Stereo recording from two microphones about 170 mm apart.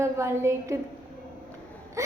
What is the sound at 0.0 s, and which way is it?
Speech, 15° right (ahead or behind).